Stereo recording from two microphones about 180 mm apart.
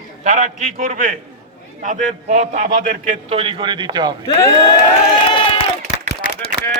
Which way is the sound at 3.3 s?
30° right (ahead or behind).